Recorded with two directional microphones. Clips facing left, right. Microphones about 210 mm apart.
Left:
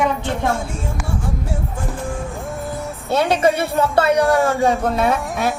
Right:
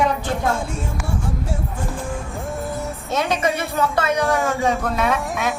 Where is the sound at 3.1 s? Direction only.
30° left (ahead or behind).